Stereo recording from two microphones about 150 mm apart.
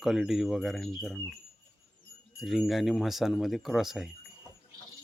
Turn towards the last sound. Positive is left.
turn(degrees=0)  # may be behind; listen again after turning